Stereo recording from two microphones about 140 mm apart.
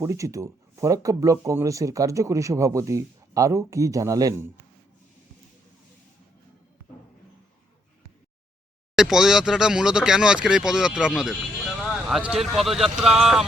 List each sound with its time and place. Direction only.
0.0 s speech: 20° right (ahead or behind)
9.0 s speech: 5° right (ahead or behind)